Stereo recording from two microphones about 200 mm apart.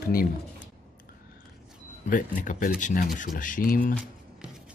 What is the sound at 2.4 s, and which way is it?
Speech, 40° left (ahead or behind).